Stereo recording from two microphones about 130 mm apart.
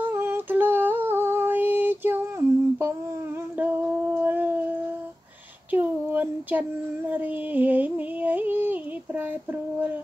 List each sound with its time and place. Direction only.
0.0 s female singing: 20° right (ahead or behind)
3.5 s a sound: 10° right (ahead or behind)
7.1 s music: 15° right (ahead or behind)